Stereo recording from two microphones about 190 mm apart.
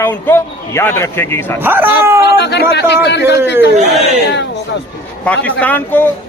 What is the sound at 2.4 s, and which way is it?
Speech, 60° left (ahead or behind).